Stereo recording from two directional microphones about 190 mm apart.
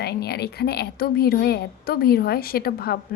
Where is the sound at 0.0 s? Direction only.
55° left (ahead or behind).